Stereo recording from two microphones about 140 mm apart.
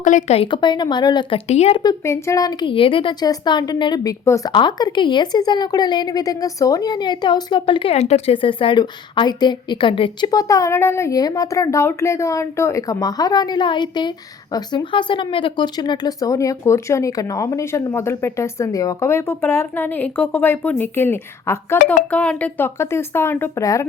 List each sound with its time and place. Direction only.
0.0 s speech: 60° left (ahead or behind)
0.3 s speech: 35° left (ahead or behind)
1.5 s speech: 50° left (ahead or behind)
1.8 s a woman's voice: 25° left (ahead or behind)